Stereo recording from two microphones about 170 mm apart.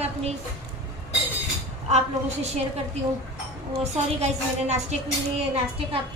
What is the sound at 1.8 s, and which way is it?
Speech, 40° right (ahead or behind).